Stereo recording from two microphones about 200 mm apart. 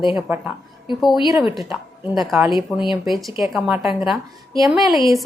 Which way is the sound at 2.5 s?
25° left (ahead or behind).